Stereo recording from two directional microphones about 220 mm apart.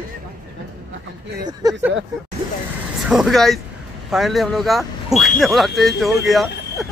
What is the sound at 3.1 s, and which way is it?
Speech, centre (ahead or behind).